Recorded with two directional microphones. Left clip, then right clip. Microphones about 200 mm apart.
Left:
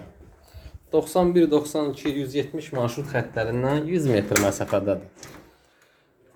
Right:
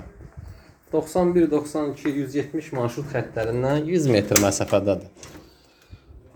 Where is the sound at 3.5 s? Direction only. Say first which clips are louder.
Right 4 dB; 5° right (ahead or behind); by 5.0 s 25° right (ahead or behind).